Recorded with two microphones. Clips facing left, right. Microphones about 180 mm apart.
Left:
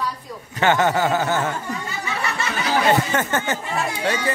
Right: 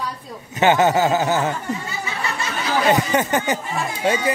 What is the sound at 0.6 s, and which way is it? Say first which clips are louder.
Snicker: right 3 dB; 20° right (ahead or behind).